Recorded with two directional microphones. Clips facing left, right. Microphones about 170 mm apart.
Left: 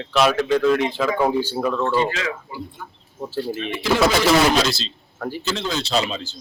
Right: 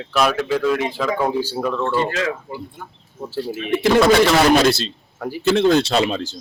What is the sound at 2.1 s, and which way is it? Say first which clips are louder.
Speech: right 4 dB; 50° right (ahead or behind).